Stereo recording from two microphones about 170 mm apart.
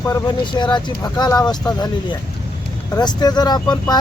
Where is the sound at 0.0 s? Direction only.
20° left (ahead or behind).